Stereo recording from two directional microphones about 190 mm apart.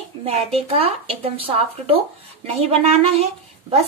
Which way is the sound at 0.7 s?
30° right (ahead or behind).